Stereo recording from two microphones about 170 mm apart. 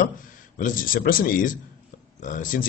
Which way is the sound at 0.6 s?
55° left (ahead or behind).